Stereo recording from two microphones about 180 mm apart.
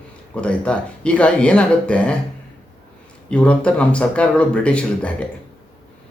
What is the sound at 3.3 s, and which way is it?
A man's voice, 5° left (ahead or behind).